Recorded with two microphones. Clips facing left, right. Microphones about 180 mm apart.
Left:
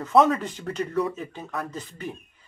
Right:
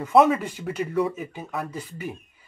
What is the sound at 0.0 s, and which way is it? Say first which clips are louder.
Speech: right 1 dB; 5° right (ahead or behind).